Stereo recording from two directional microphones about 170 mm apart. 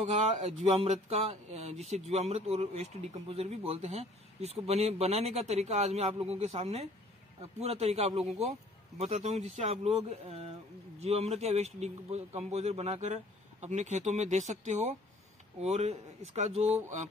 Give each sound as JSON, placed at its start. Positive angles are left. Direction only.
{"t": 0.0, "sound": "speech", "side_deg": -40}